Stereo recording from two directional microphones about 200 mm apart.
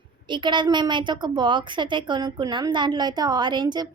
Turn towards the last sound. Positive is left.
turn(degrees=-20)  # may be behind; listen again after turning